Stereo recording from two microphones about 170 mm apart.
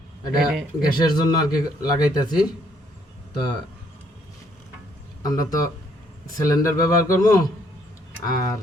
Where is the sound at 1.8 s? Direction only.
20° left (ahead or behind).